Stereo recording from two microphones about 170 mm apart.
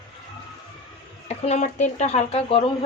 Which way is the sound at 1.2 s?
40° left (ahead or behind).